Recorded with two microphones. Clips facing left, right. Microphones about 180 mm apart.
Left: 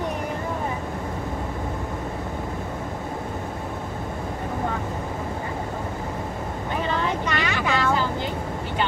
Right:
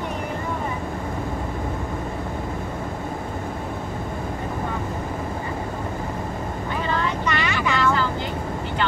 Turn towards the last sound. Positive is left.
turn(degrees=50)  # may be behind; listen again after turning